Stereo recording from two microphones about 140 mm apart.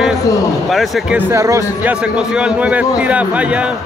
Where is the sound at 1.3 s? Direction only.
20° right (ahead or behind).